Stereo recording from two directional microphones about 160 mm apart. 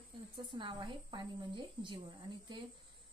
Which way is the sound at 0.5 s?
30° right (ahead or behind).